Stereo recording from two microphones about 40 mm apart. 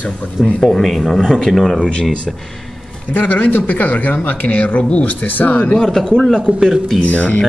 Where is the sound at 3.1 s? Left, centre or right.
Left.